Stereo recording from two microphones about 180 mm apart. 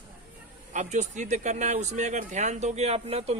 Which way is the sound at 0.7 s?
40° right (ahead or behind).